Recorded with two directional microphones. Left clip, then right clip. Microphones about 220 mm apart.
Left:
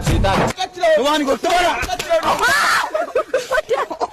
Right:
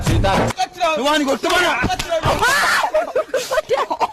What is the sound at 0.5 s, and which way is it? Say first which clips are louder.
Speech: left 3 dB; 45° right (ahead or behind).